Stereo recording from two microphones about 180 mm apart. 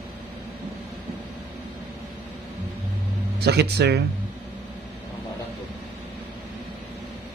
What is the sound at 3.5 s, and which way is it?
Speech, 65° right (ahead or behind).